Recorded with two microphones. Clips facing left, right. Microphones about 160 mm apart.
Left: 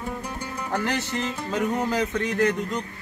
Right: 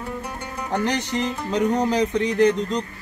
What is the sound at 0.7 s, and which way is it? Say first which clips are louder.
Music: right 4 dB; 15° right (ahead or behind).